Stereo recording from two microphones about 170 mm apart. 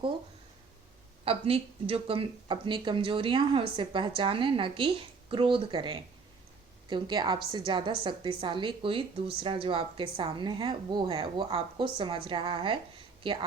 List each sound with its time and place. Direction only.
1.2 s speech: 35° right (ahead or behind)